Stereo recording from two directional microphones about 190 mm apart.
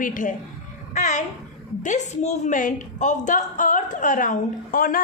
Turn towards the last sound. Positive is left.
turn(degrees=45)  # may be behind; listen again after turning